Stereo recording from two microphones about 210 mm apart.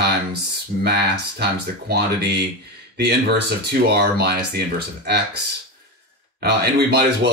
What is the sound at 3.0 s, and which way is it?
Speech, 50° right (ahead or behind).